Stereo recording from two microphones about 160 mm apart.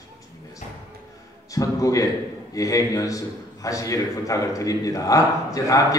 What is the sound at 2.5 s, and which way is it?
A man's voice, 20° left (ahead or behind).